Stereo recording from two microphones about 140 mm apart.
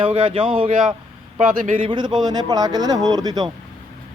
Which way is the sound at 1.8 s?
35° right (ahead or behind).